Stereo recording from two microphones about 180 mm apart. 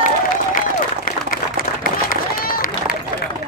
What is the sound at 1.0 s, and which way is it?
Run, 50° left (ahead or behind).